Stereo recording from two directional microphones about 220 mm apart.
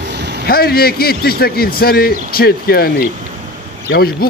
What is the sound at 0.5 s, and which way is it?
A man's voice, 45° left (ahead or behind).